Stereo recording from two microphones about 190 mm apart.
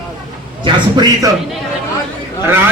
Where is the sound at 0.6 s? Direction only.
25° right (ahead or behind).